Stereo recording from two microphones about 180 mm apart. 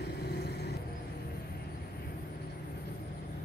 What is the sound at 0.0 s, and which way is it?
Vehicle, 65° left (ahead or behind).